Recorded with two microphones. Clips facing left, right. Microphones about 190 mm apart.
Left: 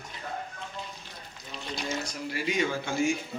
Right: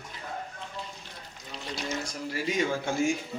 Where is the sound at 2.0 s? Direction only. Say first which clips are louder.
Even; 45° right (ahead or behind).